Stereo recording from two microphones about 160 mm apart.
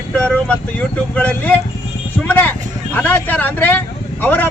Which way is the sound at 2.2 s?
10° left (ahead or behind).